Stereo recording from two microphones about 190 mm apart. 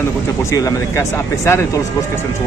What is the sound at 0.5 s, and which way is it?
Speech, 15° left (ahead or behind).